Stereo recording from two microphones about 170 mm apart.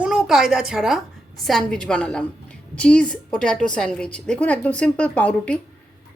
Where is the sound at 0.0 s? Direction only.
5° right (ahead or behind).